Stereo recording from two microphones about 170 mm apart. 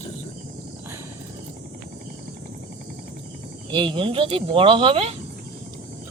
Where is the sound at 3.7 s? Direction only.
30° right (ahead or behind).